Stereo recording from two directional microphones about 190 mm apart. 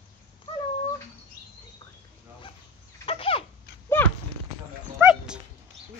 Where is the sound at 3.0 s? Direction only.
30° left (ahead or behind).